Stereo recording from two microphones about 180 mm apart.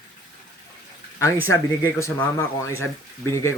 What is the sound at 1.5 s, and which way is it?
Speech, 15° left (ahead or behind).